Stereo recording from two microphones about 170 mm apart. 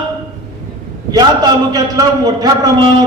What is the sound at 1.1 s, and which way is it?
A man's voice, 25° right (ahead or behind).